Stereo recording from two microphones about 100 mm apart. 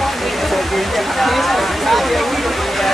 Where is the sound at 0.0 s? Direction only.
Centre (ahead or behind).